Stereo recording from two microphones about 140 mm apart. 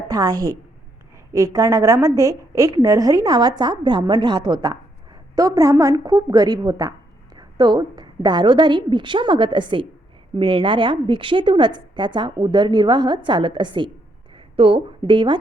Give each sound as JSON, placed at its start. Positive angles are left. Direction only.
{"t": 0.1, "sound": "a woman's voice", "side_deg": -30}